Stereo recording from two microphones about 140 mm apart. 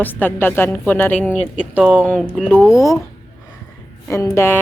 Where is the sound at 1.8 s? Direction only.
10° right (ahead or behind).